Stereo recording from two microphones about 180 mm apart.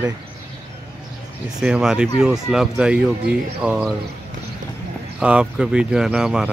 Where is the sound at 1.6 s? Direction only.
5° right (ahead or behind).